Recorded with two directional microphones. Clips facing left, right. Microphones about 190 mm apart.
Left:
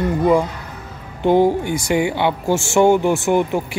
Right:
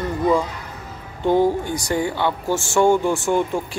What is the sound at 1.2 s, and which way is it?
Speech, 20° left (ahead or behind).